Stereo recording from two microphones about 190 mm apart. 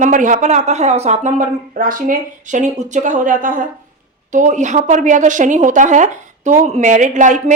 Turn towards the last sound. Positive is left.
turn(degrees=-40)  # may be behind; listen again after turning